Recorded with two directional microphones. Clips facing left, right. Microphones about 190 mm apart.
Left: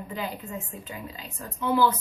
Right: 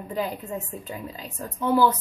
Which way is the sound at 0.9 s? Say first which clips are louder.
Right 3 dB; 40° right (ahead or behind).